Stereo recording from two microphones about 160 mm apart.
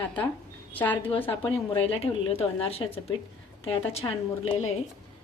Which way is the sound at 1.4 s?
35° left (ahead or behind).